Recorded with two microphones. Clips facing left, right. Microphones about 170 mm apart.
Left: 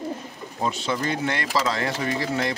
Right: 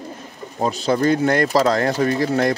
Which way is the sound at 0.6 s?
40° right (ahead or behind).